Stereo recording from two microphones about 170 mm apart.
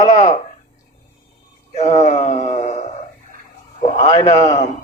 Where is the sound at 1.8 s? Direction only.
40° left (ahead or behind).